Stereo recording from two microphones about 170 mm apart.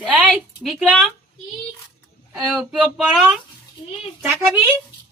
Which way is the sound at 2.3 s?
10° right (ahead or behind).